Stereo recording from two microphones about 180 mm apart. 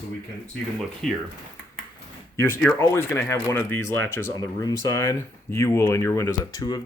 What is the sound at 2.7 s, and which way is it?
Speech, 15° left (ahead or behind).